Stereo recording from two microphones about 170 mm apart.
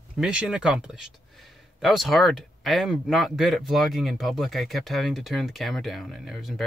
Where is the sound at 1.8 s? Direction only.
Centre (ahead or behind).